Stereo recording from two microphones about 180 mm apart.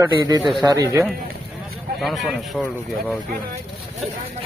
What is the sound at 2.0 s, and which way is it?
Speech, centre (ahead or behind).